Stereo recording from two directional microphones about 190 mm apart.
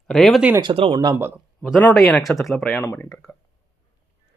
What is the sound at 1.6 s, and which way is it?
Speech, 5° left (ahead or behind).